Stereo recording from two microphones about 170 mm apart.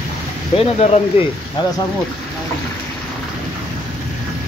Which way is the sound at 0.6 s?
35° left (ahead or behind).